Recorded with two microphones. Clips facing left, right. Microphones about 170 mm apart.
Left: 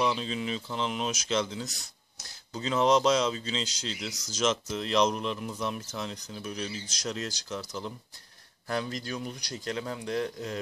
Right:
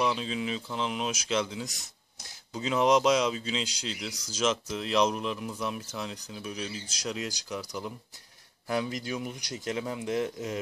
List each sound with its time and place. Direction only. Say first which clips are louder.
0.0 s speech: even; 5° right (ahead or behind)